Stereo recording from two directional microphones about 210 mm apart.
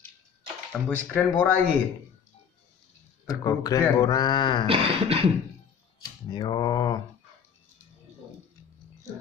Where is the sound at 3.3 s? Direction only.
15° left (ahead or behind).